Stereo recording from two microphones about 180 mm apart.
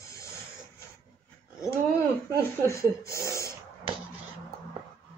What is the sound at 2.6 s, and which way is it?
Speech, 15° left (ahead or behind).